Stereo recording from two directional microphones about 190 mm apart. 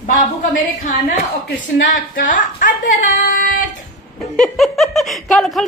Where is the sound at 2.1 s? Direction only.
45° left (ahead or behind).